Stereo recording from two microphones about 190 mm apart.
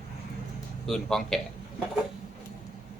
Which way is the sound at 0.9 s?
Centre (ahead or behind).